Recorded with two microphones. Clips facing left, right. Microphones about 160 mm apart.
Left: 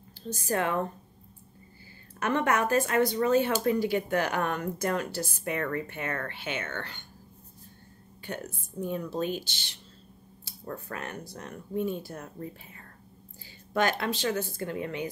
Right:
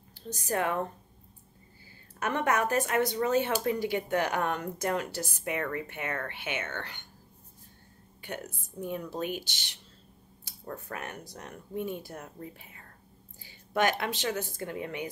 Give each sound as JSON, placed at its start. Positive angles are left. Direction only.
{"t": 0.3, "sound": "speech", "side_deg": -15}
{"t": 2.1, "sound": "speech", "side_deg": -15}
{"t": 8.8, "sound": "speech", "side_deg": -15}
{"t": 13.7, "sound": "speech", "side_deg": -15}